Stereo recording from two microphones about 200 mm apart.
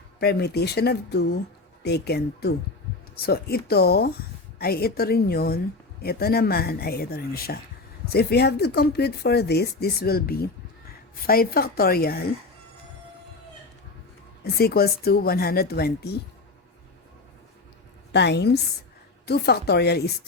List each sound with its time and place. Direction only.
0.2 s speech: 55° left (ahead or behind)
14.4 s speech: 50° left (ahead or behind)
18.1 s speech: 60° left (ahead or behind)